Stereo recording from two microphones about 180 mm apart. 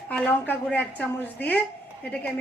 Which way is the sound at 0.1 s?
10° left (ahead or behind).